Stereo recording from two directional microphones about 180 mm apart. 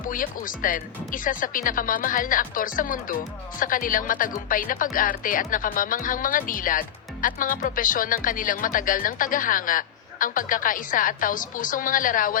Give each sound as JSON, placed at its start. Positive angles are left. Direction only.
{"t": 0.0, "sound": "speech", "side_deg": 50}